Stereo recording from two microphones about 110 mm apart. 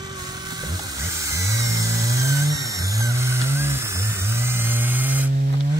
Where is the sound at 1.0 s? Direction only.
30° right (ahead or behind).